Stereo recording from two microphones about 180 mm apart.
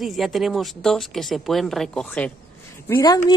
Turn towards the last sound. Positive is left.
turn(degrees=20)  # may be behind; listen again after turning